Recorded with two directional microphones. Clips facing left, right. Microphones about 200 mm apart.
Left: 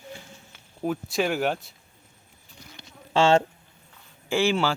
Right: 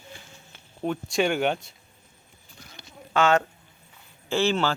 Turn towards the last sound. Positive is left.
turn(degrees=10)  # may be behind; listen again after turning